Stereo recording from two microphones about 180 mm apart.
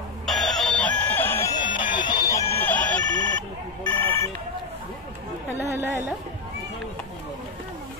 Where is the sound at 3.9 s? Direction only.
10° left (ahead or behind).